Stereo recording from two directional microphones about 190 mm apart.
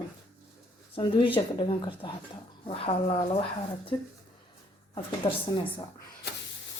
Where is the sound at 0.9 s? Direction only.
25° left (ahead or behind).